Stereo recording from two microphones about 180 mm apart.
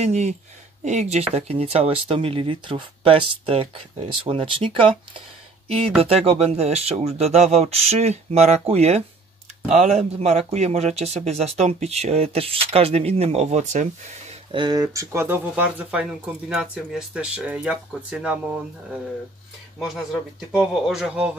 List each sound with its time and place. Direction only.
0.0 s speech: 40° right (ahead or behind)
14.5 s speech: 25° right (ahead or behind); by 17.7 s 5° right (ahead or behind)
19.8 s a man's voice: centre (ahead or behind)